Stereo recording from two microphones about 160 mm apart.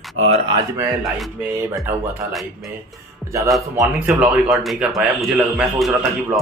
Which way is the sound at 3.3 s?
20° right (ahead or behind).